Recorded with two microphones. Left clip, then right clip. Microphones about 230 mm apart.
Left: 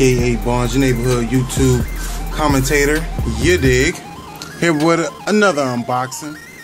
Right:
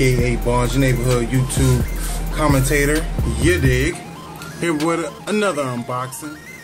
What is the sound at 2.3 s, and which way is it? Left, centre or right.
Speech, left.